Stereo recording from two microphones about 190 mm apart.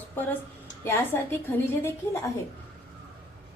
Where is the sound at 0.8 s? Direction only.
10° left (ahead or behind).